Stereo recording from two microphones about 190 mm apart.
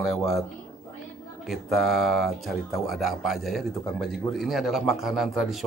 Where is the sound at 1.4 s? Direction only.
Centre (ahead or behind).